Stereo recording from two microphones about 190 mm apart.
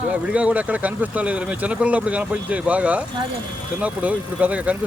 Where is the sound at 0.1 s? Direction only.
5° right (ahead or behind).